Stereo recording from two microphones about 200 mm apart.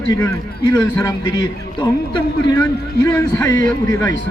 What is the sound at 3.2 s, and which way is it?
Speech, 20° left (ahead or behind).